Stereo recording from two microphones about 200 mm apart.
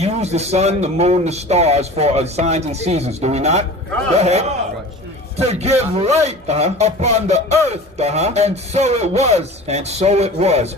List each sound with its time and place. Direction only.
0.0 s speech: 30° right (ahead or behind)